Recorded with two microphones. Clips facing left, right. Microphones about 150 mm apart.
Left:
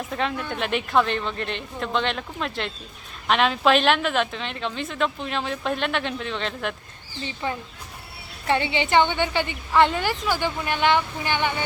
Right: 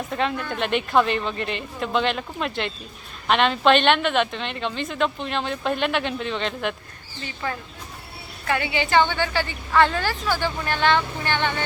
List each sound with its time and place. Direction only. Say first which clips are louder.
0.1 s speech: right 2 dB; centre (ahead or behind)
7.4 s a woman's voice: even; 25° left (ahead or behind)